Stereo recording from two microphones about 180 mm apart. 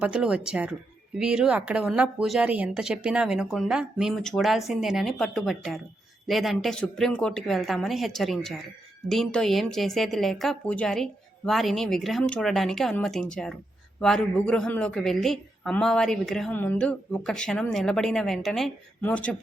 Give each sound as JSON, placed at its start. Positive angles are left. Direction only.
{"t": 0.0, "sound": "a woman's voice", "side_deg": -5}